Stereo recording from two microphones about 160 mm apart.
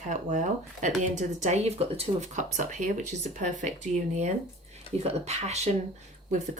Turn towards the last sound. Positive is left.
turn(degrees=-50)  # may be behind; listen again after turning